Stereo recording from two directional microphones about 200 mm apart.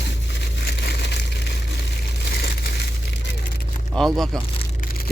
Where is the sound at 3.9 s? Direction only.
Centre (ahead or behind).